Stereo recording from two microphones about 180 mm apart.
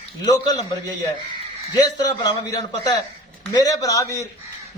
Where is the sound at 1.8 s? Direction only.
25° left (ahead or behind).